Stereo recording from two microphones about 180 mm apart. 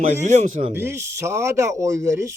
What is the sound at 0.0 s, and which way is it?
Speech, 40° right (ahead or behind).